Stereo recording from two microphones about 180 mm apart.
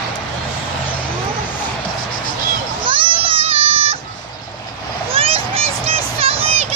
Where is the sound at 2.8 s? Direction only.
30° right (ahead or behind).